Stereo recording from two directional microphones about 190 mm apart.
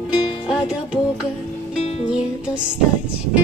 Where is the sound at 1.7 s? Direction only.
35° left (ahead or behind).